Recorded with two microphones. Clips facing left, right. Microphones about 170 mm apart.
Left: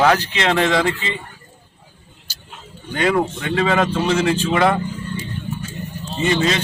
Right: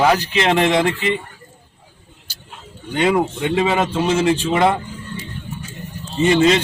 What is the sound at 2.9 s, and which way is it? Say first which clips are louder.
A man's voice: right 1 dB; 15° right (ahead or behind).